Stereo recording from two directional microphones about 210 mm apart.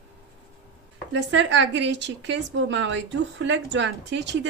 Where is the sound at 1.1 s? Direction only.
60° right (ahead or behind).